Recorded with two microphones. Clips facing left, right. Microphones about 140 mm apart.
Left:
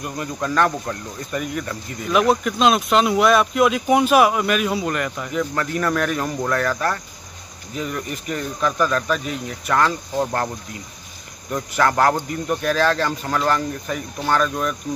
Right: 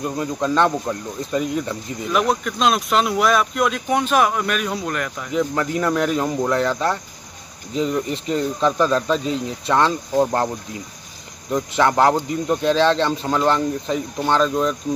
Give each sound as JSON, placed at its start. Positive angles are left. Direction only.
{"t": 0.0, "sound": "speech", "side_deg": -25}
{"t": 2.0, "sound": "speech", "side_deg": 0}
{"t": 5.3, "sound": "speech", "side_deg": -15}
{"t": 11.5, "sound": "speech", "side_deg": -20}